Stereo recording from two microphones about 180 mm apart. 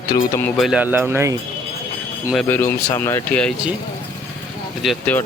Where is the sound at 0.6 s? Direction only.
5° right (ahead or behind).